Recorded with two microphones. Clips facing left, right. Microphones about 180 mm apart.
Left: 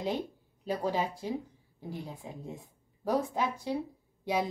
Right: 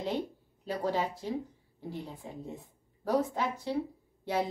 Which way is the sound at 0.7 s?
10° left (ahead or behind).